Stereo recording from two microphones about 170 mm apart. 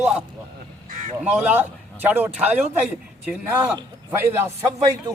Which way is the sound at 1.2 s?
10° right (ahead or behind).